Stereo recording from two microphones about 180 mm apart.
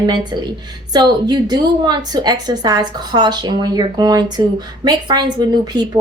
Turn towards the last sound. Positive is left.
turn(degrees=-25)  # may be behind; listen again after turning